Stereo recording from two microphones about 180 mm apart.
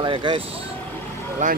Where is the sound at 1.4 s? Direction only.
45° right (ahead or behind).